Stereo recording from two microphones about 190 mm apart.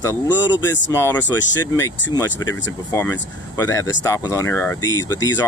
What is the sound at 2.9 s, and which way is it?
Speech, 15° left (ahead or behind).